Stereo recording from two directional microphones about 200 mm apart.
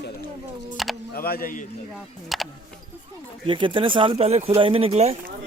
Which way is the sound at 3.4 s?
25° right (ahead or behind).